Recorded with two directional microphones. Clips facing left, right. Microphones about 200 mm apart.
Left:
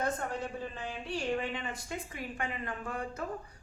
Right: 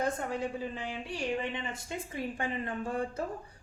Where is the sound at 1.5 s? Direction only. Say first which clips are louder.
Right 1 dB; 25° right (ahead or behind).